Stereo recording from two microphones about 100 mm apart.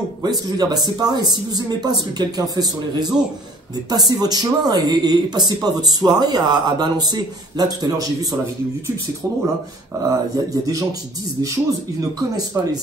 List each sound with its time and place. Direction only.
0.2 s speech: 40° right (ahead or behind)
10.0 s speech: 35° right (ahead or behind)